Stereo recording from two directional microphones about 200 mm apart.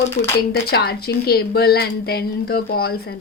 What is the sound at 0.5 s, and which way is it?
A woman's voice, 50° left (ahead or behind).